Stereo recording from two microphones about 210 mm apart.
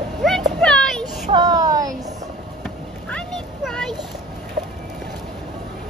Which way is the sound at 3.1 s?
Centre (ahead or behind).